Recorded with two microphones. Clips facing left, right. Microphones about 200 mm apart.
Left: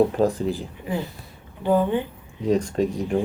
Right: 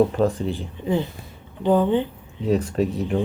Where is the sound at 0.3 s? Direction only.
Centre (ahead or behind).